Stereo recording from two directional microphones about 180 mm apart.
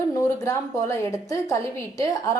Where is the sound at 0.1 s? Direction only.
15° left (ahead or behind).